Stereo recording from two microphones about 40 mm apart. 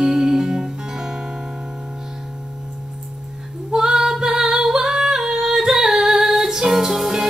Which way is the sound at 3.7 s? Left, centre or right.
Centre.